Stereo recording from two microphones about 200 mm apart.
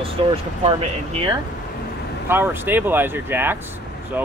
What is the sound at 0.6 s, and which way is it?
Speech, 30° right (ahead or behind).